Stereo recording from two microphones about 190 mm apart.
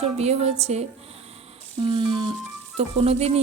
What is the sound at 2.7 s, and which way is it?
Speech, 30° right (ahead or behind).